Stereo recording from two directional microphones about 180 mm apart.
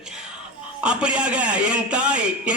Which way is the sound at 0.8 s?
5° right (ahead or behind).